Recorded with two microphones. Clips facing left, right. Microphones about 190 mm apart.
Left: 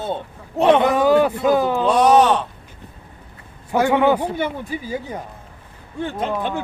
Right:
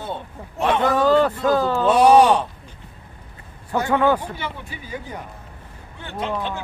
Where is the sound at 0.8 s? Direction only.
15° left (ahead or behind).